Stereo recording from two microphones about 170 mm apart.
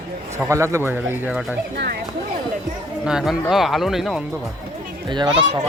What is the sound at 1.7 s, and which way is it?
Speech, 70° right (ahead or behind).